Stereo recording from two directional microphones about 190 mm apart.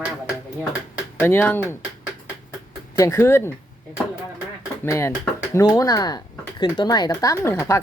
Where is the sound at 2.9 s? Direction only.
15° left (ahead or behind).